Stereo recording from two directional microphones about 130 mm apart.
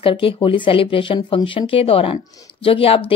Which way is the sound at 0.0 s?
40° left (ahead or behind).